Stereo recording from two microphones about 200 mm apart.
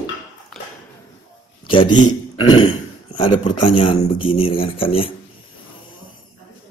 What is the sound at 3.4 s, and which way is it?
Speech, 30° left (ahead or behind).